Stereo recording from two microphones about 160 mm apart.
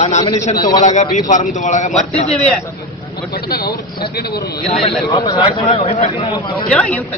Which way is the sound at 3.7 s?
80° left.